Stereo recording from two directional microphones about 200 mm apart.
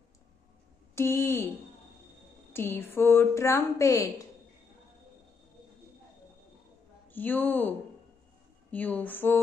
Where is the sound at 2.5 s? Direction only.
10° left (ahead or behind).